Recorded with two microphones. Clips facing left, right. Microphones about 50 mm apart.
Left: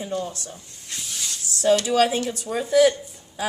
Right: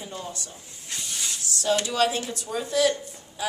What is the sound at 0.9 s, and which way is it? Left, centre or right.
Snake, centre.